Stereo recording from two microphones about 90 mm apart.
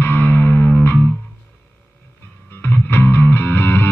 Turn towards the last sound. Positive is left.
turn(degrees=25)  # may be behind; listen again after turning